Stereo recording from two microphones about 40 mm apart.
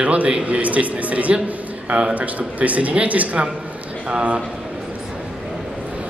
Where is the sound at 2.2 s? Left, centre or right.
Right.